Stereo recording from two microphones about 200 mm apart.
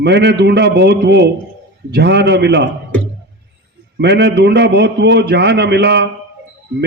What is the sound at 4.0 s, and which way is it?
A man's voice, 55° right (ahead or behind).